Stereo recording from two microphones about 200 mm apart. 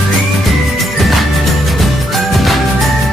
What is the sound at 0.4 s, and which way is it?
Music, centre (ahead or behind).